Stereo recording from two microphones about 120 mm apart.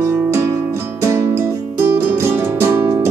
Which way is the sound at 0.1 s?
20° right (ahead or behind).